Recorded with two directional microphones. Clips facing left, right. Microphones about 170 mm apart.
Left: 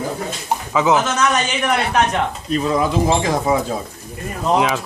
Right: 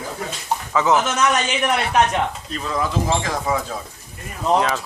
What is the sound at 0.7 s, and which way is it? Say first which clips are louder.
Speech: left 2 dB; 15° left (ahead or behind).